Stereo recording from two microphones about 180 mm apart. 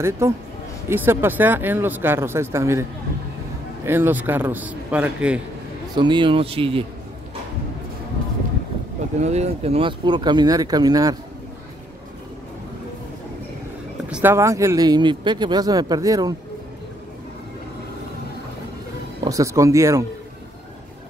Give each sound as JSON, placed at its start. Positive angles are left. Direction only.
{"t": 0.2, "sound": "speech", "side_deg": -15}
{"t": 5.9, "sound": "speech", "side_deg": -25}
{"t": 9.2, "sound": "speech", "side_deg": -35}
{"t": 14.0, "sound": "speech", "side_deg": -10}
{"t": 19.2, "sound": "speech", "side_deg": -20}